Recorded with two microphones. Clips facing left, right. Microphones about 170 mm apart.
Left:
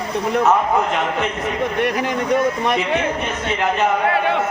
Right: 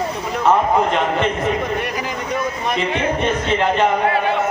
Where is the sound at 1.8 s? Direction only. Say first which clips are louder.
Left 5 dB; 60° left (ahead or behind).